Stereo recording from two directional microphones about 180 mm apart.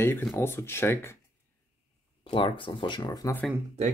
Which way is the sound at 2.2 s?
30° left (ahead or behind).